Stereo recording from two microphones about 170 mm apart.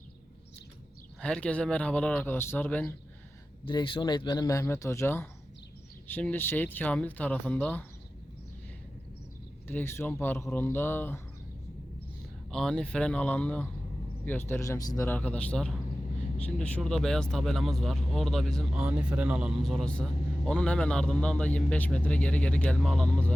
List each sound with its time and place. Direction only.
1.2 s speech: 5° left (ahead or behind)
3.7 s speech: 30° left (ahead or behind); by 7.9 s 10° left (ahead or behind)
9.6 s speech: 15° left (ahead or behind)
12.5 s speech: 5° left (ahead or behind)